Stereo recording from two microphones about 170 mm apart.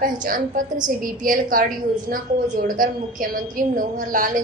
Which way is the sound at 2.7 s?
55° right (ahead or behind).